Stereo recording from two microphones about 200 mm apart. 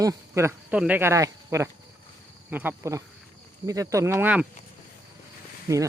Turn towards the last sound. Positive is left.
turn(degrees=-15)  # may be behind; listen again after turning